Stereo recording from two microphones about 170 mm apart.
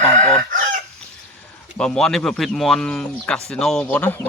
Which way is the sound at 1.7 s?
5° left (ahead or behind).